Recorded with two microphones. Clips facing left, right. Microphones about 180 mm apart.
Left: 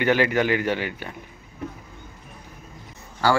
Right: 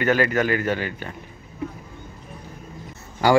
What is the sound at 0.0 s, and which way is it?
A man's voice, 15° left (ahead or behind).